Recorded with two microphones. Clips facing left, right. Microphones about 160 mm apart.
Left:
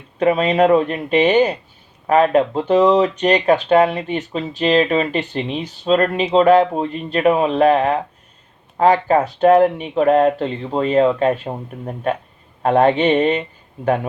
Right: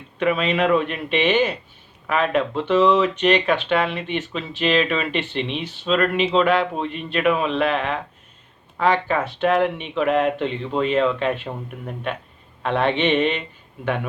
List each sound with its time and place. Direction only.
0.2 s speech: 35° left (ahead or behind)